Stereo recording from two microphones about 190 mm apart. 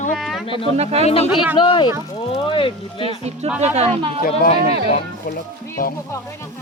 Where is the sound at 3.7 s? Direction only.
35° right (ahead or behind).